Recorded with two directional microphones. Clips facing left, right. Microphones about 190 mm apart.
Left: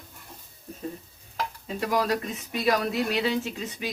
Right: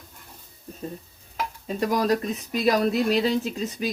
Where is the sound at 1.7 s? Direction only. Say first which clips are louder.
Right 3 dB; 40° right (ahead or behind).